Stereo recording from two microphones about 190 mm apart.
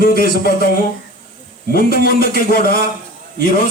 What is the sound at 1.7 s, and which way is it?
Speech, 50° left (ahead or behind).